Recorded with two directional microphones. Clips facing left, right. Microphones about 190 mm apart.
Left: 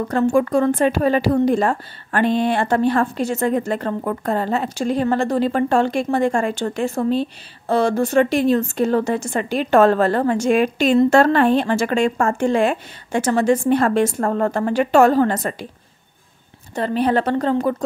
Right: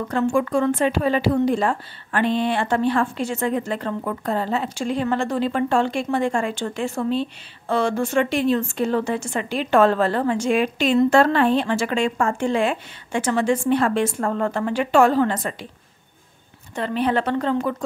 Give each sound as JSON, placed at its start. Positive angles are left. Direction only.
{"t": 0.1, "sound": "speech", "side_deg": 40}
{"t": 16.7, "sound": "speech", "side_deg": 40}